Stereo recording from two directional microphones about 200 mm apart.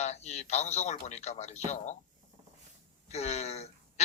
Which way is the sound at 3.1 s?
35° left (ahead or behind).